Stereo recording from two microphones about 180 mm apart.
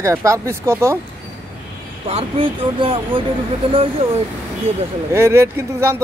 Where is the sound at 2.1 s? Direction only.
30° right (ahead or behind).